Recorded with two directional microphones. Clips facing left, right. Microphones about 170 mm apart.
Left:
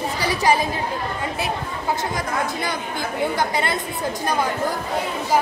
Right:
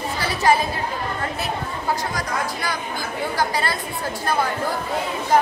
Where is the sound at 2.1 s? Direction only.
20° left (ahead or behind).